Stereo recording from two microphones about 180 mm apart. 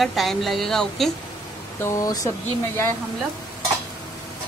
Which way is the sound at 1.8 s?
15° left (ahead or behind).